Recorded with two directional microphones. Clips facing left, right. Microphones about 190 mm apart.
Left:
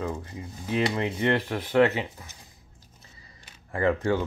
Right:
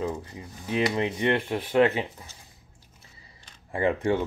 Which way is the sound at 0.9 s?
20° right (ahead or behind).